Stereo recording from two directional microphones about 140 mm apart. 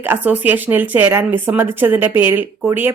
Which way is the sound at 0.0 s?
15° right (ahead or behind).